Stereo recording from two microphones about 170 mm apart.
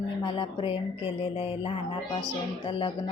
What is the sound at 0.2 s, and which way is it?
Speech, 30° left (ahead or behind).